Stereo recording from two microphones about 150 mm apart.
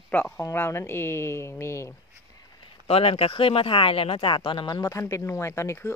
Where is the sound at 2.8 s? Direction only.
40° left (ahead or behind).